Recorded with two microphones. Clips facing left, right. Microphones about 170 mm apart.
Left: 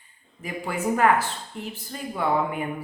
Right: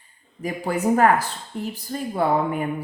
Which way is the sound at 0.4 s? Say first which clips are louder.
Right 5 dB; 40° right (ahead or behind).